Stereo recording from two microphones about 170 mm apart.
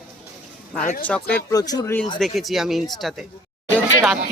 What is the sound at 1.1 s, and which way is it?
Speech, 10° left (ahead or behind).